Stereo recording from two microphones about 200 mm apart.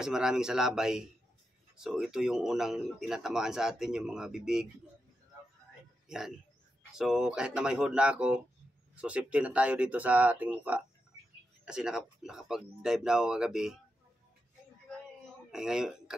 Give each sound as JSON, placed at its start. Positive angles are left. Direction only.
{"t": 0.0, "sound": "speech", "side_deg": -5}
{"t": 6.0, "sound": "speech", "side_deg": -5}
{"t": 15.5, "sound": "a man's voice", "side_deg": -5}